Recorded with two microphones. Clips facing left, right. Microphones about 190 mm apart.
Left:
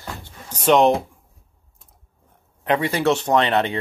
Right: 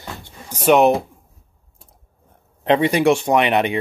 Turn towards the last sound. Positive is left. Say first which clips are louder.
# right 2 dB
turn(degrees=-15)  # may be behind; listen again after turning